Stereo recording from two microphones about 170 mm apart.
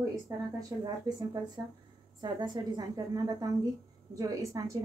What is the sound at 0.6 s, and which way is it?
Speech, 20° right (ahead or behind).